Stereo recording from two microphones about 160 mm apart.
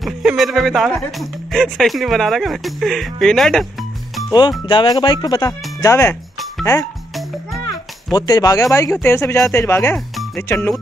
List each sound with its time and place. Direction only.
0.0 s speech: centre (ahead or behind)
4.3 s speech: 25° left (ahead or behind)
8.1 s speech: 25° left (ahead or behind)